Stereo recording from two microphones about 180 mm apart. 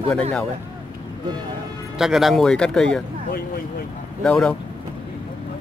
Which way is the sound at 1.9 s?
Centre (ahead or behind).